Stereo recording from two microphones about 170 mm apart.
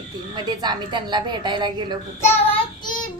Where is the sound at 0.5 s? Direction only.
25° right (ahead or behind).